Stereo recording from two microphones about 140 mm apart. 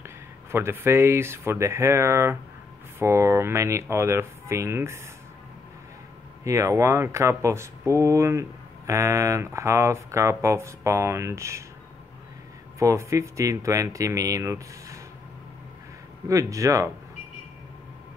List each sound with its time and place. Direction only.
0.0 s speech: 20° right (ahead or behind)
6.4 s speech: 20° right (ahead or behind)
12.7 s speech: 20° right (ahead or behind)
16.3 s speech: 25° right (ahead or behind)